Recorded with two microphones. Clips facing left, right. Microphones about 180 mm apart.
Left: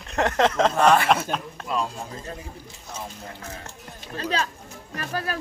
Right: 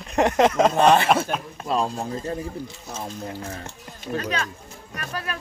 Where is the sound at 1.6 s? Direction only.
30° right (ahead or behind).